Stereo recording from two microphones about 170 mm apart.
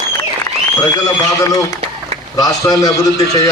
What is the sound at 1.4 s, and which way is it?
A man's voice, 20° left (ahead or behind).